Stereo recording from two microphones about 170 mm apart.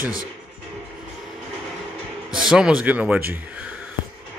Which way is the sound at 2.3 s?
5° right (ahead or behind).